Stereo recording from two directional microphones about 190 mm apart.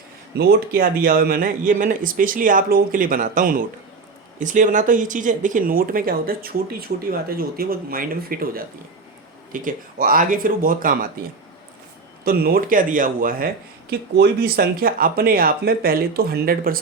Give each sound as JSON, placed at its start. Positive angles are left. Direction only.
{"t": 0.3, "sound": "speech", "side_deg": -50}
{"t": 12.2, "sound": "speech", "side_deg": -55}